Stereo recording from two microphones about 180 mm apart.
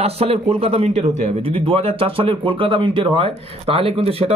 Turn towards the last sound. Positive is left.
turn(degrees=-30)  # may be behind; listen again after turning